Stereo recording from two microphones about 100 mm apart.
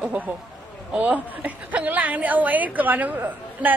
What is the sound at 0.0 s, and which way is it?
A woman's voice, 15° right (ahead or behind).